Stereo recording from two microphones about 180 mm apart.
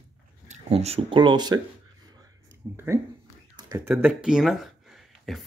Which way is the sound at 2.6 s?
15° right (ahead or behind).